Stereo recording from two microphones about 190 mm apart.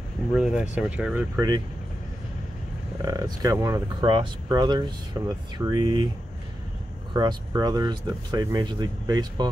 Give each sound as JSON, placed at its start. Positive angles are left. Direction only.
{"t": 0.3, "sound": "speech", "side_deg": -5}
{"t": 3.0, "sound": "speech", "side_deg": -20}
{"t": 5.2, "sound": "speech", "side_deg": -5}
{"t": 5.6, "sound": "speech", "side_deg": -20}
{"t": 7.2, "sound": "speech", "side_deg": -20}